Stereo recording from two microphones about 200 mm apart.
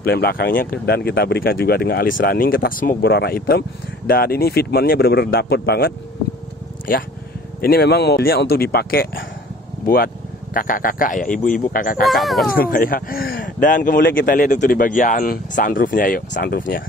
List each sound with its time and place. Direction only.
0.0 s speech: 50° left (ahead or behind)
7.6 s speech: 50° left (ahead or behind)
12.0 s speech: centre (ahead or behind)
12.5 s speech: 45° left (ahead or behind)